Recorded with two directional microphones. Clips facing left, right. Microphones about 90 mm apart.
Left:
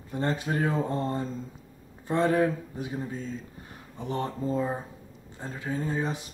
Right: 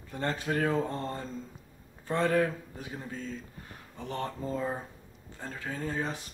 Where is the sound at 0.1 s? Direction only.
25° left (ahead or behind).